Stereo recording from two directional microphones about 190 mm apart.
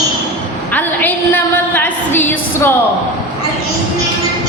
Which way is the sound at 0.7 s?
10° left (ahead or behind).